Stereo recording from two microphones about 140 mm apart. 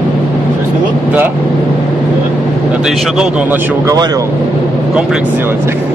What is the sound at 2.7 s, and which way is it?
Speech, 5° right (ahead or behind).